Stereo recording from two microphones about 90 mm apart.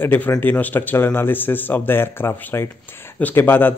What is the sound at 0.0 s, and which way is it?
Speech, 20° left (ahead or behind).